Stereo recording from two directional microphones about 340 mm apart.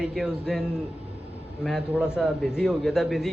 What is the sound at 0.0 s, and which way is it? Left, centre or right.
Speech, centre.